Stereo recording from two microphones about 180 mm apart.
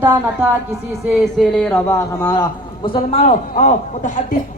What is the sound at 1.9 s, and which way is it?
A man's voice, 20° left (ahead or behind).